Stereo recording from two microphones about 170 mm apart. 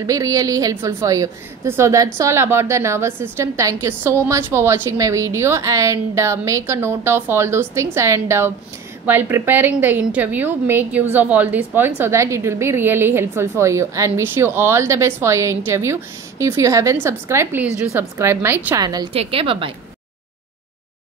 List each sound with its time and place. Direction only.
0.0 s a woman's voice: 20° right (ahead or behind)
19.1 s a woman's voice: 35° right (ahead or behind)